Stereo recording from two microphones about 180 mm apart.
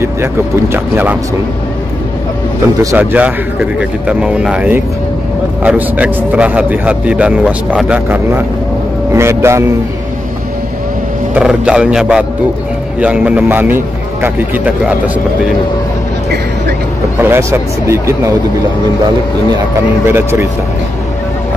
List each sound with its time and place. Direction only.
0.0 s a man's voice: 15° right (ahead or behind)
2.8 s a man's voice: 15° right (ahead or behind)
11.3 s a man's voice: 5° right (ahead or behind)
17.2 s a man's voice: 15° right (ahead or behind)
20.1 s a man's voice: 15° right (ahead or behind)